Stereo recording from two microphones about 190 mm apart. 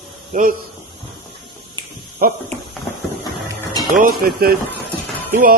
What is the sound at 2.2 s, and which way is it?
Speech, 50° right (ahead or behind).